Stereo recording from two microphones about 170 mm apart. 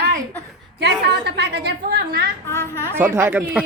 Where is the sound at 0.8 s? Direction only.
75° right (ahead or behind).